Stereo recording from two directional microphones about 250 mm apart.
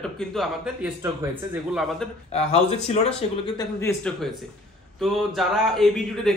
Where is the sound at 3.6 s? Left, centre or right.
Centre.